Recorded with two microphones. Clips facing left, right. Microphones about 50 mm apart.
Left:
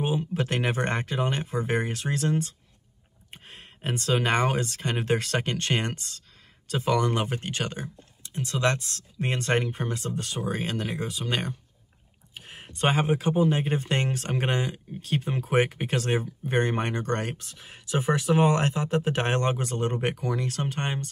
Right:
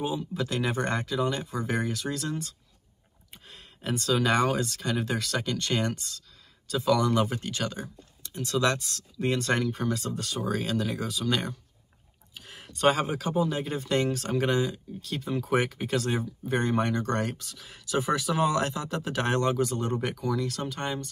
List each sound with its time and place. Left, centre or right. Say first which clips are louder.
0.0 s speech: left 3 dB; left